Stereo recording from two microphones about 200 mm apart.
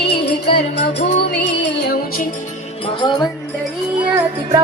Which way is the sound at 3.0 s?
20° left (ahead or behind).